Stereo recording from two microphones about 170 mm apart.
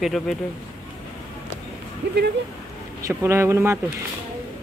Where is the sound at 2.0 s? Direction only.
90° right.